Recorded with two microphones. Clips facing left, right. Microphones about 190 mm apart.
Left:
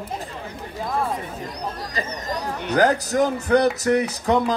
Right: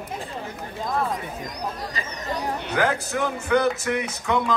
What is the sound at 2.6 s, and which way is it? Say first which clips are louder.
A man's voice: left 7 dB; 40° left (ahead or behind).